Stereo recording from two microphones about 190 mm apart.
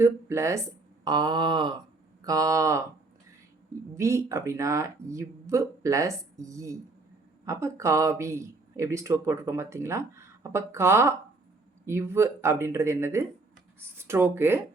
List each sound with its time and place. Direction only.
0.0 s speech: 15° right (ahead or behind)
1.0 s a sound: 25° right (ahead or behind)
2.2 s speech: 15° right (ahead or behind)
3.9 s speech: 15° right (ahead or behind)